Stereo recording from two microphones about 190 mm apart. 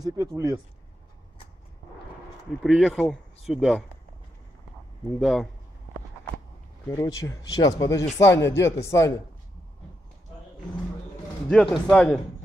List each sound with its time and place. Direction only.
0.0 s speech: 20° right (ahead or behind)
2.6 s speech: centre (ahead or behind)
5.2 s speech: centre (ahead or behind)
6.9 s speech: 15° left (ahead or behind)
11.4 s speech: 5° left (ahead or behind)